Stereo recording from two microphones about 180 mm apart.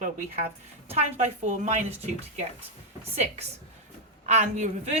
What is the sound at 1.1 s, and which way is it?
Speech, 40° right (ahead or behind).